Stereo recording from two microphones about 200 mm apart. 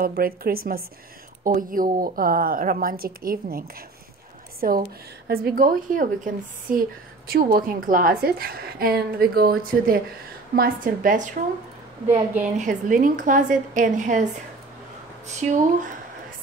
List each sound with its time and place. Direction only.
0.0 s a woman's voice: 45° right (ahead or behind)
12.5 s a woman's voice: 40° right (ahead or behind)
15.2 s a woman's voice: 35° right (ahead or behind)